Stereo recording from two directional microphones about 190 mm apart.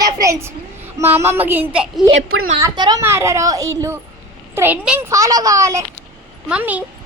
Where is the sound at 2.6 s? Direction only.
20° right (ahead or behind).